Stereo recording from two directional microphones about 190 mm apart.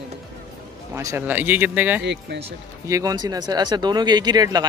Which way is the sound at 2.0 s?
65° right (ahead or behind).